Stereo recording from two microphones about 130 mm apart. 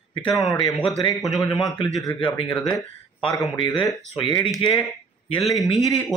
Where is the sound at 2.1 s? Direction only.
40° left (ahead or behind).